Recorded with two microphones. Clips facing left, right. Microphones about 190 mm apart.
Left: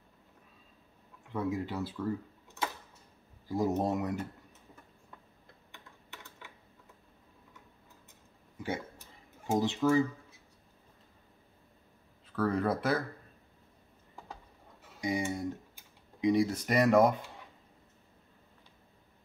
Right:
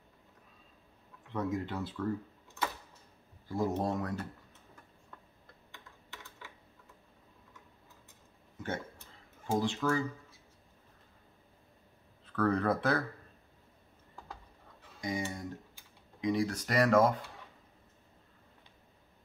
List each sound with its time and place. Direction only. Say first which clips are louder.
1.3 s speech: left 1 dB; 5° left (ahead or behind)
3.4 s speech: left 2 dB; 15° left (ahead or behind)
9.5 s speech: left 3 dB; 20° left (ahead or behind)
12.3 s speech: even; 5° left (ahead or behind)
15.0 s speech: left 4 dB; 15° left (ahead or behind)